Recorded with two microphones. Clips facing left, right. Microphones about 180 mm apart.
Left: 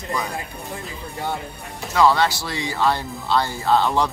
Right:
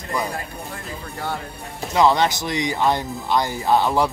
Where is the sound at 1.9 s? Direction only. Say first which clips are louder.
Even; 20° right (ahead or behind).